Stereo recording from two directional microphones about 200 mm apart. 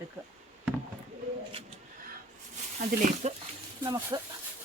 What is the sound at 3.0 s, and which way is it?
Speech, 40° right (ahead or behind).